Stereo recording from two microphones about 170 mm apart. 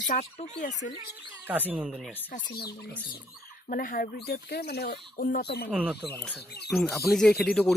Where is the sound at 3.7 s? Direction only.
55° left (ahead or behind).